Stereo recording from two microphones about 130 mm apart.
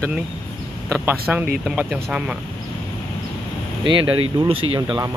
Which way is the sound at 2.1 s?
10° right (ahead or behind).